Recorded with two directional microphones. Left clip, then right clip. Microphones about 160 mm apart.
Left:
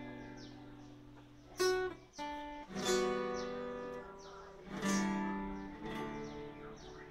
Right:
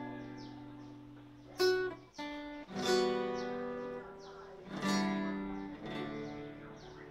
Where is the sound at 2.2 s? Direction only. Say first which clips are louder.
Left 1 dB; 35° right (ahead or behind).